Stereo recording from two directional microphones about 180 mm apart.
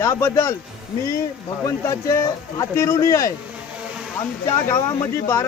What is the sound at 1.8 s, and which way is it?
Speech, 15° left (ahead or behind).